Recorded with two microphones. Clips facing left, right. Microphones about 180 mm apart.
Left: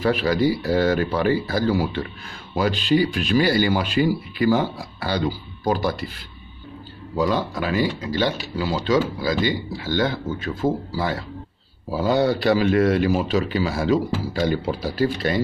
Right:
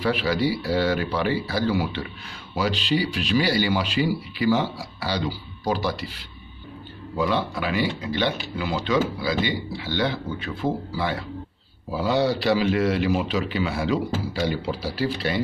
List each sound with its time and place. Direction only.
0.0 s speech: 45° left (ahead or behind)